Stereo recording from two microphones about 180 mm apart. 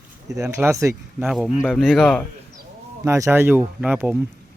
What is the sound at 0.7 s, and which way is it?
Speech, 15° right (ahead or behind).